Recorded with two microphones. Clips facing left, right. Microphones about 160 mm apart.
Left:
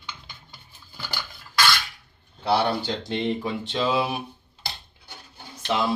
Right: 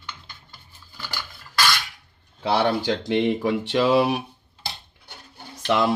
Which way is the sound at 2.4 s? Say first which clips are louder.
Right 1 dB; 90° right.